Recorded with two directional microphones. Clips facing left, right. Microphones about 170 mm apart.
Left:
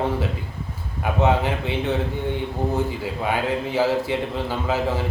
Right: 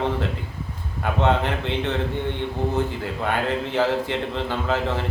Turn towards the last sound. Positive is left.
turn(degrees=10)  # may be behind; listen again after turning